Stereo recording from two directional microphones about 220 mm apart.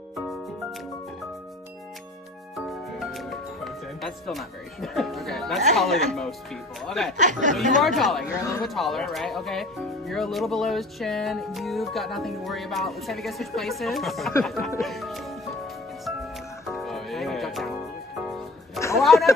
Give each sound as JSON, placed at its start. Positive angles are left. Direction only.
{"t": 3.0, "sound": "speech", "side_deg": 0}
{"t": 7.2, "sound": "speech", "side_deg": -35}
{"t": 7.8, "sound": "speech", "side_deg": 0}
{"t": 8.4, "sound": "speech", "side_deg": 15}
{"t": 8.6, "sound": "speech", "side_deg": 0}
{"t": 14.8, "sound": "music", "side_deg": 0}
{"t": 18.8, "sound": "a sound", "side_deg": 0}